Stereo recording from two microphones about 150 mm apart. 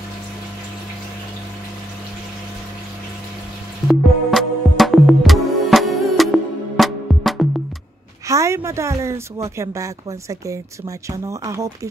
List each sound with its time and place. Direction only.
3.8 s music: centre (ahead or behind)
8.3 s a woman's voice: 20° right (ahead or behind)